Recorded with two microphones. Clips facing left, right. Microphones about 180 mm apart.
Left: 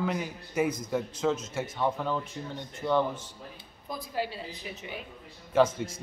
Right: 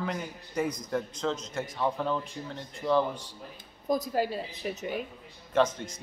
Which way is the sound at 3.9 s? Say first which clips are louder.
Right 6 dB; 45° right (ahead or behind).